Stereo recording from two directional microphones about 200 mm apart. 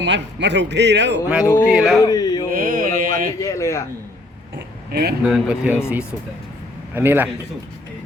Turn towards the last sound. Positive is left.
turn(degrees=-10)  # may be behind; listen again after turning